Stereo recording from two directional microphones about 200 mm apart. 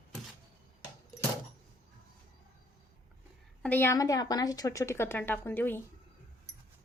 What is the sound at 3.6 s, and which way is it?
A woman's voice, 10° left (ahead or behind).